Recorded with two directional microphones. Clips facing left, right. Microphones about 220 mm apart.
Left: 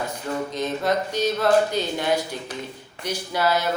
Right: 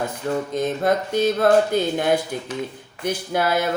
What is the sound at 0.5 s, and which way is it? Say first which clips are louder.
Speech: right 3 dB; 50° right (ahead or behind).